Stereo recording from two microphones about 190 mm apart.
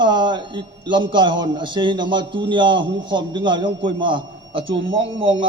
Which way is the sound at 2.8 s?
80° right.